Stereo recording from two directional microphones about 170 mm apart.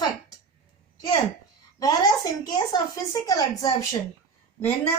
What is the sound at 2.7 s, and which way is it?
A woman's voice, 20° left (ahead or behind).